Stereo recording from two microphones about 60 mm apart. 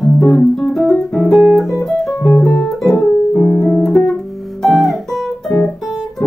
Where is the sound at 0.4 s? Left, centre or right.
Centre.